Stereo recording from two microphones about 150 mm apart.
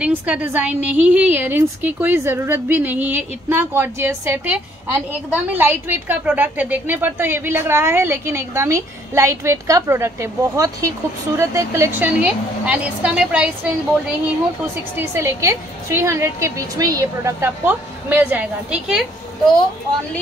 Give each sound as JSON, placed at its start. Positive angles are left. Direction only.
{"t": 0.0, "sound": "a woman's voice", "side_deg": -10}
{"t": 15.0, "sound": "a woman's voice", "side_deg": -20}